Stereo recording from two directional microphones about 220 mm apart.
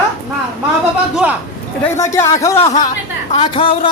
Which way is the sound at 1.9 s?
10° left (ahead or behind).